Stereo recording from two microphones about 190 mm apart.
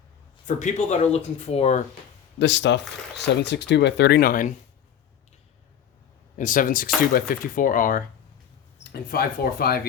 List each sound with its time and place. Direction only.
0.4 s speech: 40° left (ahead or behind)
2.4 s speech: 65° left (ahead or behind); by 4.5 s 45° left (ahead or behind)
6.3 s speech: 45° left (ahead or behind)